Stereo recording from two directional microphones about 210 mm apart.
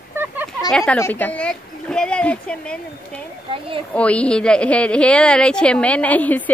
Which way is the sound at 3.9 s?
5° left (ahead or behind).